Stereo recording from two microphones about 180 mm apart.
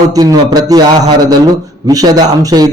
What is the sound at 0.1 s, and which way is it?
A man's voice, 20° right (ahead or behind).